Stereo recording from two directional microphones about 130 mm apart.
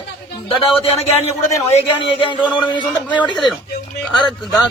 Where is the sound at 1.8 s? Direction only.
45° left (ahead or behind).